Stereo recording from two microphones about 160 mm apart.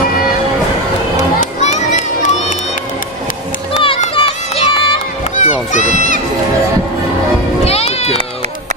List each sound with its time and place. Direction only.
1.1 s children playing: 45° left (ahead or behind)
3.7 s children playing: 35° left (ahead or behind)
5.3 s run: 50° left (ahead or behind)
7.6 s music: 40° left (ahead or behind)